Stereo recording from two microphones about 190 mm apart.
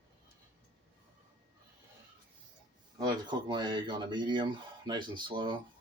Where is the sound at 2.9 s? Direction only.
25° right (ahead or behind).